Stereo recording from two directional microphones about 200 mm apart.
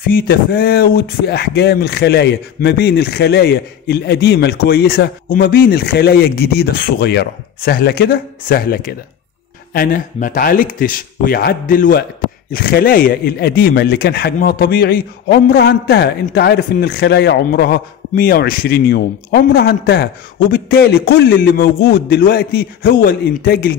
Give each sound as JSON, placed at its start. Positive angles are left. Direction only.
{"t": 0.0, "sound": "speech", "side_deg": 50}